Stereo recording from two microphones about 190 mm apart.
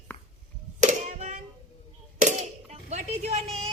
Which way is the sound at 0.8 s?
40° right (ahead or behind).